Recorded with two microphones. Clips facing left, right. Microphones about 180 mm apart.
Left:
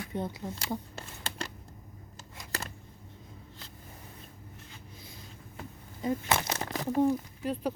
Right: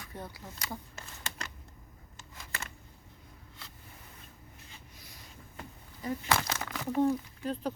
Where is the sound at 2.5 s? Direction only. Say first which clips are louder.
Left 5 dB; 40° left (ahead or behind).